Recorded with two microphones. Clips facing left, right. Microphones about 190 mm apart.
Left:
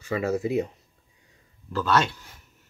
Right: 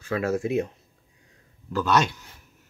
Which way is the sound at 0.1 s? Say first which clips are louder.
Even; 5° left (ahead or behind).